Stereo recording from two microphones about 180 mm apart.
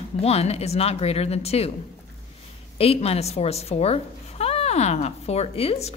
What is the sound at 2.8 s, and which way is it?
Speech, 35° left (ahead or behind).